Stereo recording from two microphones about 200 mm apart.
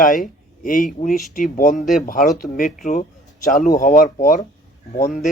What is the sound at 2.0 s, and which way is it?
A man's voice, 45° left (ahead or behind).